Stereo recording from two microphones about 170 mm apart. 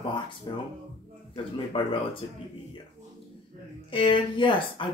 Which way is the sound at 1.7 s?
30° left (ahead or behind).